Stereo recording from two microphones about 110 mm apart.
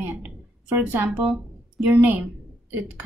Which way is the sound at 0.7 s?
15° right (ahead or behind).